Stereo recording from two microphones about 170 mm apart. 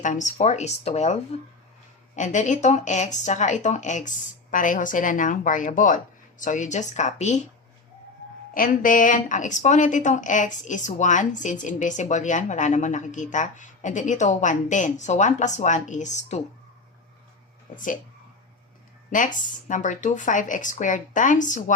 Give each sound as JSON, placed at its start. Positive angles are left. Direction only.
{"t": 0.0, "sound": "speech", "side_deg": 45}
{"t": 8.5, "sound": "speech", "side_deg": 55}
{"t": 17.7, "sound": "speech", "side_deg": 50}
{"t": 19.1, "sound": "speech", "side_deg": 50}